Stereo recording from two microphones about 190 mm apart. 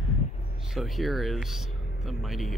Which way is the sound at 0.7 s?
Centre (ahead or behind).